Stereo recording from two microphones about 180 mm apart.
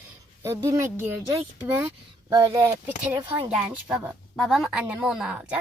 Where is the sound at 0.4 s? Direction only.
15° right (ahead or behind).